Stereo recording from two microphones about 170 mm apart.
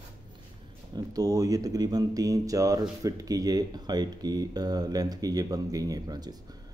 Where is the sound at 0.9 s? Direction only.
20° right (ahead or behind).